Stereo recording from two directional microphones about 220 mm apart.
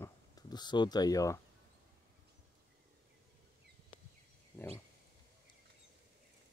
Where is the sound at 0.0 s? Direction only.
15° left (ahead or behind).